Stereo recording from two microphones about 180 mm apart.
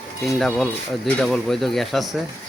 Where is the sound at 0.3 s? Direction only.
Centre (ahead or behind).